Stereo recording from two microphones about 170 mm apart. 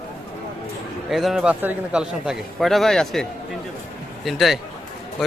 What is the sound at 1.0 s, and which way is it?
A man's voice, centre (ahead or behind).